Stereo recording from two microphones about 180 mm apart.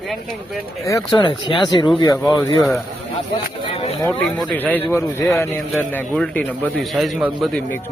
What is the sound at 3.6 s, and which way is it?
Speech, 35° left (ahead or behind).